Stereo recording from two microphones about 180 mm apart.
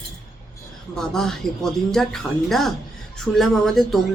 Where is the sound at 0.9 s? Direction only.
5° left (ahead or behind).